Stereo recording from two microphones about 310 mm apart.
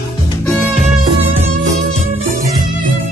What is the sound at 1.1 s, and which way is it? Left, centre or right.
Music, centre.